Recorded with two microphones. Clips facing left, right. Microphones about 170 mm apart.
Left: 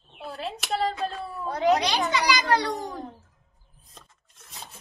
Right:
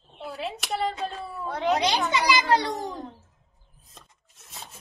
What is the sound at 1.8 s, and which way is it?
Speech, 20° right (ahead or behind).